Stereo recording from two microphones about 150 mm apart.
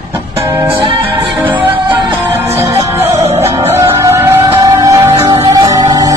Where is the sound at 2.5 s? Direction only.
15° right (ahead or behind).